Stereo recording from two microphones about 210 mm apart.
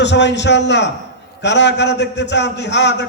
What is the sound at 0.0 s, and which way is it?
A man's voice, 55° left (ahead or behind).